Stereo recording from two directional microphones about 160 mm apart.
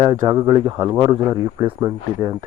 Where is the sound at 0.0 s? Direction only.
25° right (ahead or behind).